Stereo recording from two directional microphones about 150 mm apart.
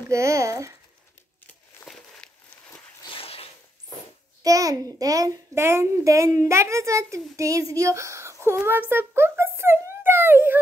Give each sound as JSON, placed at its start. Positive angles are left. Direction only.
{"t": 0.1, "sound": "speech", "side_deg": -20}
{"t": 3.0, "sound": "a sound", "side_deg": 35}
{"t": 4.4, "sound": "a child's voice", "side_deg": -25}